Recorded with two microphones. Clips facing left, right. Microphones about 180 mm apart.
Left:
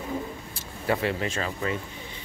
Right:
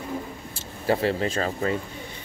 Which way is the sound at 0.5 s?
30° right (ahead or behind).